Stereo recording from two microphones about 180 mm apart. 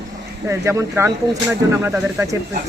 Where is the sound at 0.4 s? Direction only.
15° right (ahead or behind).